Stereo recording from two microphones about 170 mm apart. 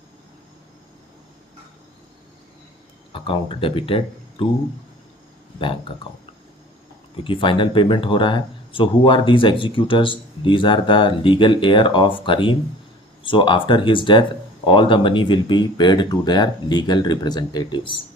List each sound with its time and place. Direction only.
3.1 s speech: 30° left (ahead or behind)
7.3 s speech: 30° left (ahead or behind)